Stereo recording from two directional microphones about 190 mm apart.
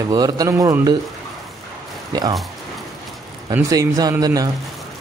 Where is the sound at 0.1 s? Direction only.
20° right (ahead or behind).